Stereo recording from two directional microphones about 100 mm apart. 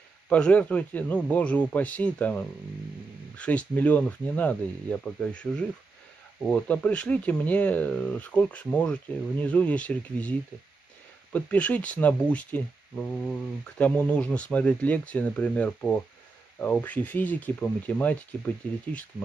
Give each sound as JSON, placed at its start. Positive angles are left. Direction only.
{"t": 0.3, "sound": "speech", "side_deg": 15}
{"t": 11.3, "sound": "speech", "side_deg": 15}